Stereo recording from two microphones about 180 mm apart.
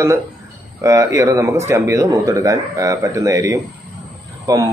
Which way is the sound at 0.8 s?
15° right (ahead or behind).